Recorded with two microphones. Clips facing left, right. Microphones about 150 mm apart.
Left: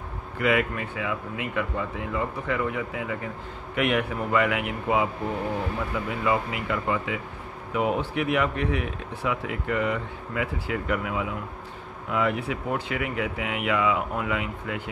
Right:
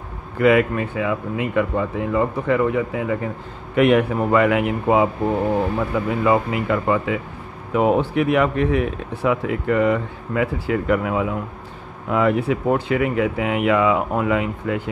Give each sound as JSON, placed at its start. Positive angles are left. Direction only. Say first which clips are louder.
{"t": 0.4, "sound": "speech", "louder": "right 8 dB", "side_deg": -40}